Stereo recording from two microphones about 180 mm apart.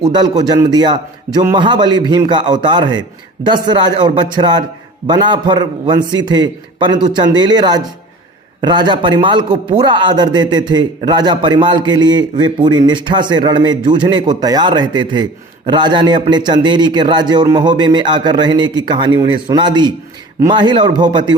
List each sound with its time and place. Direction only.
0.0 s a man's voice: 25° right (ahead or behind)